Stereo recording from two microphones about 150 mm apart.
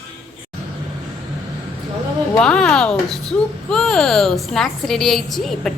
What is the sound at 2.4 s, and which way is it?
Speech, 5° left (ahead or behind).